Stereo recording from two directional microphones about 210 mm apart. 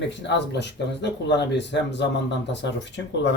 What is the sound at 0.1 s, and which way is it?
Speech, 55° left (ahead or behind).